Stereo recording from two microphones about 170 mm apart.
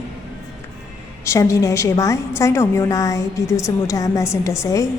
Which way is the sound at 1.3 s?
20° left (ahead or behind).